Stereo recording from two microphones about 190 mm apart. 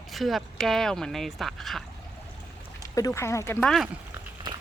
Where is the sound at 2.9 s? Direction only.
15° left (ahead or behind).